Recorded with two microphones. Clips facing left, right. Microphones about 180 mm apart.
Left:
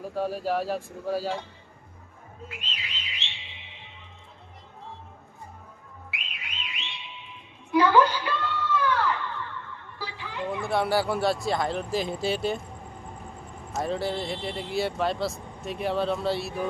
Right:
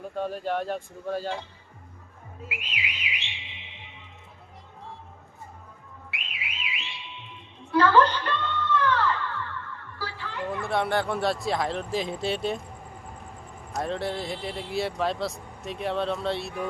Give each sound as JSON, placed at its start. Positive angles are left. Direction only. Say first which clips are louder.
{"t": 0.1, "sound": "speech", "louder": "left 2 dB", "side_deg": 5}
{"t": 2.5, "sound": "whistle", "louder": "right 6 dB", "side_deg": -10}
{"t": 6.1, "sound": "car alarm", "louder": "right 2 dB", "side_deg": 0}
{"t": 7.7, "sound": "a sound", "louder": "even", "side_deg": 15}
{"t": 10.6, "sound": "speech", "louder": "left 1 dB", "side_deg": 0}
{"t": 13.7, "sound": "speech", "louder": "left 1 dB", "side_deg": 0}